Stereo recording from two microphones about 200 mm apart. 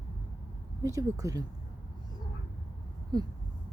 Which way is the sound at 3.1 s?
20° right (ahead or behind).